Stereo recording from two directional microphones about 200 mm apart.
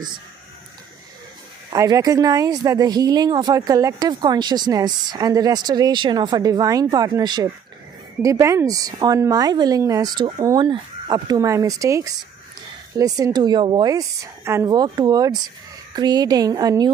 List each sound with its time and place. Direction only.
1.7 s speech: 20° right (ahead or behind)